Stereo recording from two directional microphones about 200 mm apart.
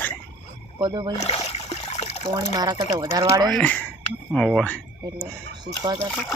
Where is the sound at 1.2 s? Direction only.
30° left (ahead or behind).